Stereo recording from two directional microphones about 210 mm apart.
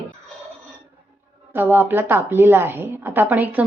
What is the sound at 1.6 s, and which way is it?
Speech, 10° right (ahead or behind).